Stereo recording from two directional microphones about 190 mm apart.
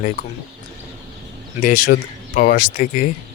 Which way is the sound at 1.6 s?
45° left (ahead or behind).